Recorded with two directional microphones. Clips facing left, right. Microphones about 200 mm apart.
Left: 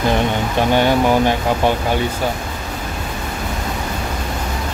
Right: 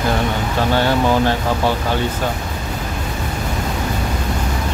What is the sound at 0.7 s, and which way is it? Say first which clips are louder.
Speech: left 2 dB; 15° left (ahead or behind).